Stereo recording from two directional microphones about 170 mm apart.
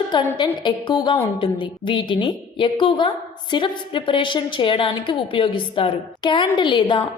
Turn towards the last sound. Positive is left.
turn(degrees=30)  # may be behind; listen again after turning